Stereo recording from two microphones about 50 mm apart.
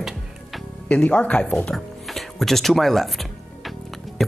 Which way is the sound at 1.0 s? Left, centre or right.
Left.